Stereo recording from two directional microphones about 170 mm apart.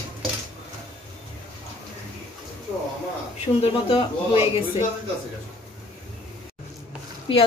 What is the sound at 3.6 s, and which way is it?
Speech, 35° left (ahead or behind).